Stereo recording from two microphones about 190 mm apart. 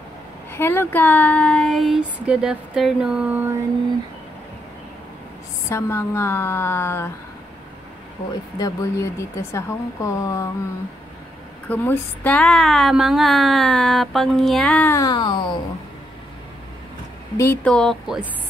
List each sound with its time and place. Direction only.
0.5 s speech: 10° left (ahead or behind); by 3.5 s 10° right (ahead or behind)
5.7 s a woman's voice: 15° left (ahead or behind)
8.5 s a woman's voice: 15° left (ahead or behind)
11.7 s speech: 10° left (ahead or behind)
17.4 s speech: 10° left (ahead or behind)